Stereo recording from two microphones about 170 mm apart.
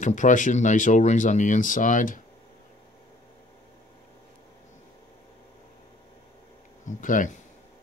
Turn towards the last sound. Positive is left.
turn(degrees=50)  # may be behind; listen again after turning